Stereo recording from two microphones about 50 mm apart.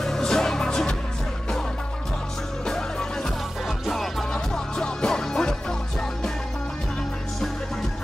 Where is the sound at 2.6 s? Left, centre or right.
Centre.